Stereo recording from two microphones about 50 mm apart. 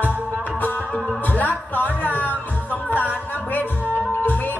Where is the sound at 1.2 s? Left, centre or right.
Left.